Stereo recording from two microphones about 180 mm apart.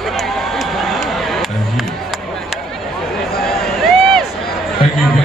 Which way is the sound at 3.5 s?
Centre (ahead or behind).